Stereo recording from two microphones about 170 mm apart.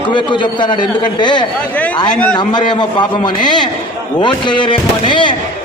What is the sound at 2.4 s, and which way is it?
A man's voice, 25° left (ahead or behind).